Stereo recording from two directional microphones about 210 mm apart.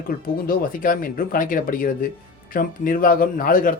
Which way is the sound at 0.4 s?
40° left (ahead or behind).